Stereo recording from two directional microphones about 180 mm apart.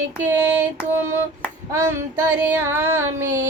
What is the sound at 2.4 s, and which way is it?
Female singing, 10° right (ahead or behind).